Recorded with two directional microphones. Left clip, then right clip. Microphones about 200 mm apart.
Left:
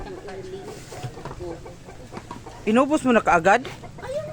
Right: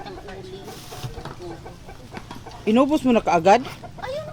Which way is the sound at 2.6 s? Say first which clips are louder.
Right 1 dB; 15° right (ahead or behind).